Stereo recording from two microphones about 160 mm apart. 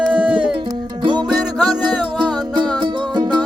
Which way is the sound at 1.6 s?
25° right (ahead or behind).